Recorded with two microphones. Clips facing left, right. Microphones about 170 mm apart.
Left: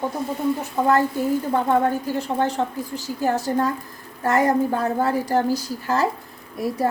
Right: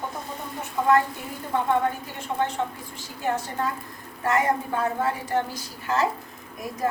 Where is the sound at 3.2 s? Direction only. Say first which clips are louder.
Left 6 dB; 40° left (ahead or behind).